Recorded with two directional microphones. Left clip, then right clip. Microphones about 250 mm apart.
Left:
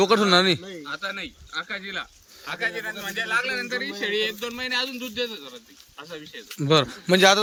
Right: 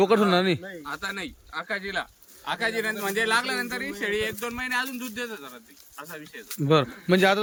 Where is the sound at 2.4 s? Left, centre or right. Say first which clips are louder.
Right 1 dB; right.